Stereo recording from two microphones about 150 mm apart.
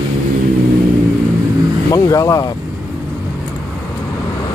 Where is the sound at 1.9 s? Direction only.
25° left (ahead or behind).